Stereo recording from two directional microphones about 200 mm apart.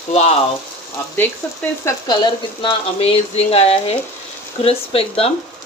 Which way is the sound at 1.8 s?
20° left (ahead or behind).